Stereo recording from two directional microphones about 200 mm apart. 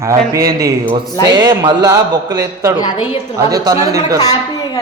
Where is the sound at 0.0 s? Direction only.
15° right (ahead or behind).